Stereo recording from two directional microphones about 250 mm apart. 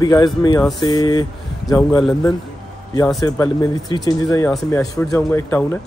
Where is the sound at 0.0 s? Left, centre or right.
Centre.